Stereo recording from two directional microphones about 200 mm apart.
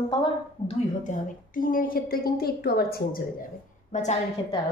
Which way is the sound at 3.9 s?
35° left (ahead or behind).